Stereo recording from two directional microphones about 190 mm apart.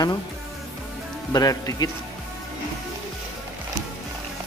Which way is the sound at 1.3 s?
20° left (ahead or behind).